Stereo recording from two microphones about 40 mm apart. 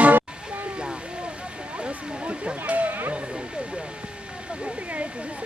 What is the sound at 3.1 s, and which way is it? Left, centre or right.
Vehicle, right.